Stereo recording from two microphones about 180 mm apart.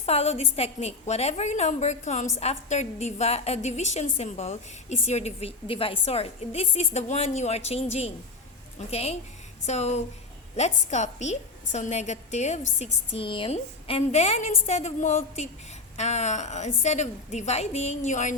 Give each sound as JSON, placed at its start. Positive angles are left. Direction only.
{"t": 0.0, "sound": "a woman's voice", "side_deg": 35}